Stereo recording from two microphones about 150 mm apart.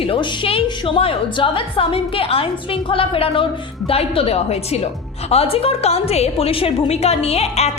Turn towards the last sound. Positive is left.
turn(degrees=45)  # may be behind; listen again after turning